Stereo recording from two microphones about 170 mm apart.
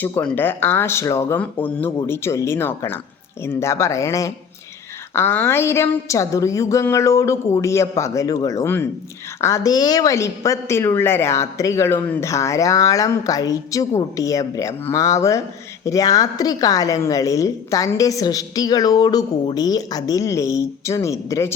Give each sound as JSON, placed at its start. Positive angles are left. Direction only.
{"t": 0.0, "sound": "a woman's voice", "side_deg": 10}